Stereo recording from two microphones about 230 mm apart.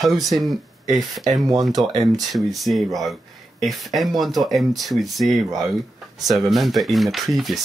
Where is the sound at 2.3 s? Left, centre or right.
Centre.